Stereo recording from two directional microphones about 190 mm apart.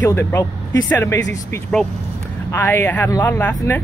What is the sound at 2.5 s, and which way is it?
Speech, 15° left (ahead or behind).